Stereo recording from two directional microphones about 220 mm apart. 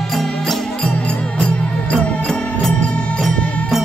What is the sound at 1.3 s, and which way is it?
Music, 5° left (ahead or behind).